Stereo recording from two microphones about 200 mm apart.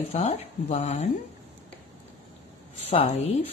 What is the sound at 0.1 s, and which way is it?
Speech, 30° left (ahead or behind).